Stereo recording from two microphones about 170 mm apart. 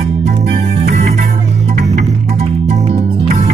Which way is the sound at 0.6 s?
40° right (ahead or behind).